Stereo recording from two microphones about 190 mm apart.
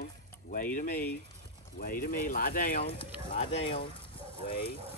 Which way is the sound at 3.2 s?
30° left (ahead or behind).